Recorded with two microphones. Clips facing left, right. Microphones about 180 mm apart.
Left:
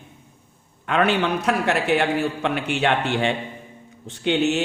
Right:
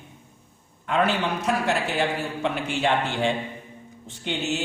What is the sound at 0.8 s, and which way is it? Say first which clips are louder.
A man's voice: left 3 dB; 70° left (ahead or behind).